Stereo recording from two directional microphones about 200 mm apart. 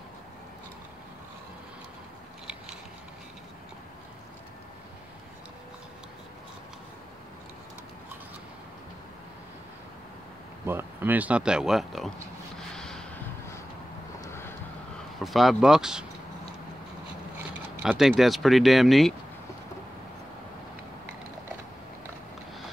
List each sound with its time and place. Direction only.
10.6 s speech: 10° right (ahead or behind)
12.5 s snort: 5° left (ahead or behind)
14.2 s vehicle: 10° left (ahead or behind)
15.2 s speech: centre (ahead or behind)
17.8 s speech: centre (ahead or behind)